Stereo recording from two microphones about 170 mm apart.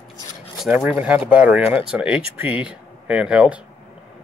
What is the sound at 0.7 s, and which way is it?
Speech, 10° right (ahead or behind).